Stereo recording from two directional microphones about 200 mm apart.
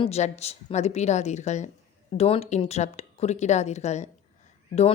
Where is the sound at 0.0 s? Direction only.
30° left (ahead or behind).